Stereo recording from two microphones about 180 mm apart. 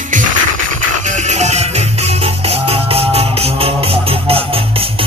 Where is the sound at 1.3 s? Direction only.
40° right (ahead or behind).